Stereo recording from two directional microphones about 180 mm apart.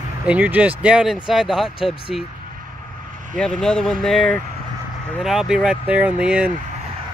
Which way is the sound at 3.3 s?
5° left (ahead or behind).